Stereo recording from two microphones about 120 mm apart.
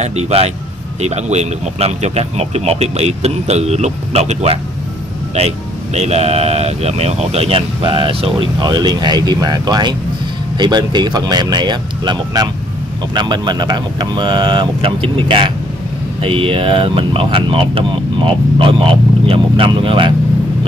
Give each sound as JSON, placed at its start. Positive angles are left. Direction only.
{"t": 0.0, "sound": "speech", "side_deg": -65}
{"t": 5.9, "sound": "speech", "side_deg": -65}